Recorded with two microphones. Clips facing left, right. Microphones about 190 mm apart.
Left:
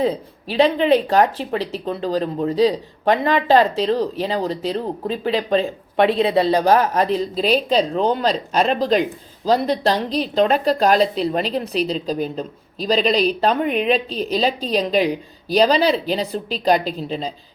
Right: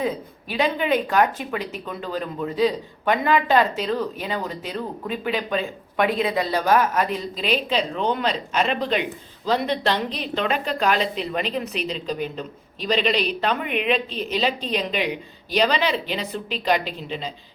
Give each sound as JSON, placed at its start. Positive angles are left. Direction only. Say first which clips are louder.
{"t": 0.0, "sound": "speech", "louder": "left 5 dB", "side_deg": 35}